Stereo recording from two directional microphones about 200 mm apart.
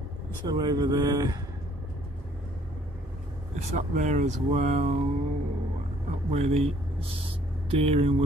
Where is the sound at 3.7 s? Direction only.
40° right (ahead or behind).